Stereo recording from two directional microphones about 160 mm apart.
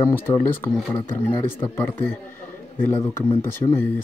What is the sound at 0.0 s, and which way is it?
Speech, 20° left (ahead or behind).